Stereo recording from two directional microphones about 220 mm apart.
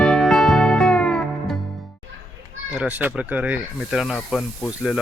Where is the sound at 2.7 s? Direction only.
5° right (ahead or behind).